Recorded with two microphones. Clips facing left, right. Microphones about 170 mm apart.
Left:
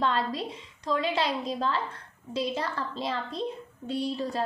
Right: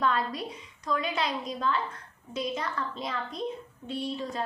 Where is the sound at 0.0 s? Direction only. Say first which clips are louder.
Left 1 dB; 25° left (ahead or behind).